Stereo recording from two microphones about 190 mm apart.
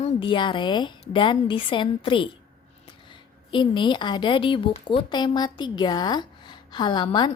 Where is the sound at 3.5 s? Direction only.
25° left (ahead or behind).